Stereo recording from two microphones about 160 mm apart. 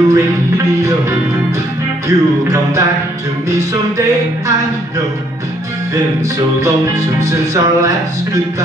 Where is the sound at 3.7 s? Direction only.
20° right (ahead or behind).